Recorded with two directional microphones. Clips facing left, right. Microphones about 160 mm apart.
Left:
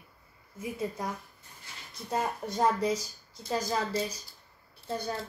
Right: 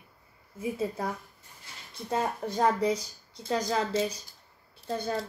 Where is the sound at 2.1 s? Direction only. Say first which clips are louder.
Right 2 dB; 25° right (ahead or behind).